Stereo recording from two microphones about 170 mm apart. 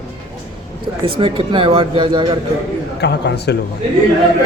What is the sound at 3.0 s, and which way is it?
Speech, 80° left.